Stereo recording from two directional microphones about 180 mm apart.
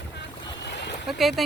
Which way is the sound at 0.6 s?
70° left (ahead or behind).